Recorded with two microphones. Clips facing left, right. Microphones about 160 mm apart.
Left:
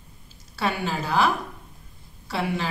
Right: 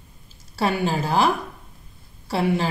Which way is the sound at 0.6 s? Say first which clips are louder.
Right 4 dB; 30° right (ahead or behind).